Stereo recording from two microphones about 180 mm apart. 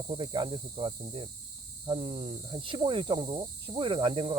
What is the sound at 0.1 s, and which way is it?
Speech, 25° right (ahead or behind).